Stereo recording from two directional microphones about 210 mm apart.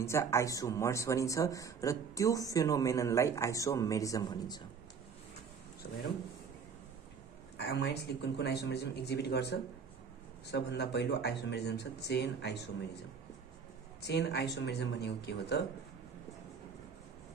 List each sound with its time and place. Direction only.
0.0 s a man's voice: 15° left (ahead or behind)
7.5 s speech: 50° left (ahead or behind)
14.0 s speech: 55° left (ahead or behind)